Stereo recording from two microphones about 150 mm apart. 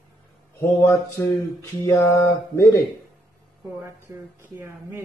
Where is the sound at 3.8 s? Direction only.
15° right (ahead or behind).